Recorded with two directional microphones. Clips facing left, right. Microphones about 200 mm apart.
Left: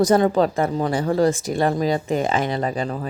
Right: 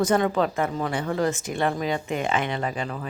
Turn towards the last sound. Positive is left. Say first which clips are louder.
# left 5 dB
turn(degrees=35)  # may be behind; listen again after turning